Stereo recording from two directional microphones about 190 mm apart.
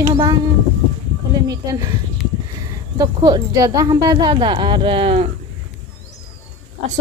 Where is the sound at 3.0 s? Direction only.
20° right (ahead or behind).